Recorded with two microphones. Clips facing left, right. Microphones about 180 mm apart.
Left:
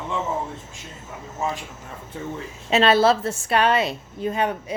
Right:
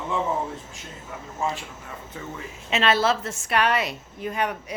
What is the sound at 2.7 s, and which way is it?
A woman's voice, 30° left (ahead or behind).